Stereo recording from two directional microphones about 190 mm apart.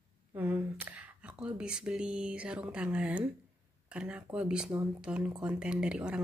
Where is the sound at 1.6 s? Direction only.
5° right (ahead or behind).